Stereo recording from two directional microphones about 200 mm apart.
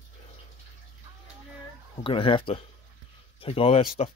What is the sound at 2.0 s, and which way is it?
A man's voice, 25° left (ahead or behind).